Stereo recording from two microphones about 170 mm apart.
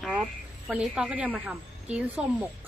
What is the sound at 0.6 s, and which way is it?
A woman's voice, 5° right (ahead or behind).